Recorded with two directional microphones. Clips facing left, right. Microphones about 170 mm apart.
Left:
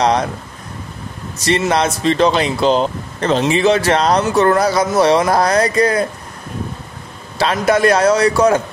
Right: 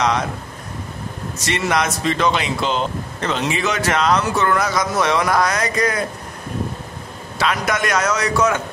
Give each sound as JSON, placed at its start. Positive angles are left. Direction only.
{"t": 1.4, "sound": "speech", "side_deg": 30}
{"t": 7.3, "sound": "speech", "side_deg": 30}